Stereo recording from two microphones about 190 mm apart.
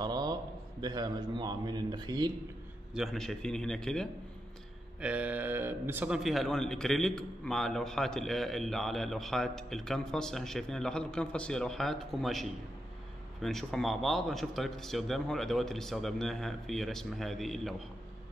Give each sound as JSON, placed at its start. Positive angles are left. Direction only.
{"t": 0.0, "sound": "a man's voice", "side_deg": -20}
{"t": 2.9, "sound": "a man's voice", "side_deg": 0}